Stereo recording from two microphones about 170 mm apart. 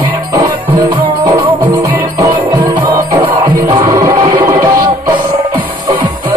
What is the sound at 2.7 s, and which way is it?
Music, 25° right (ahead or behind).